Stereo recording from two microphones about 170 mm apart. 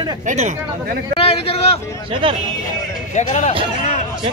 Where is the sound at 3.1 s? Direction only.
40° left (ahead or behind).